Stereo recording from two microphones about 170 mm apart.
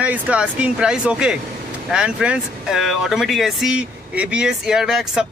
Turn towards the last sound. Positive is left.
turn(degrees=-5)  # may be behind; listen again after turning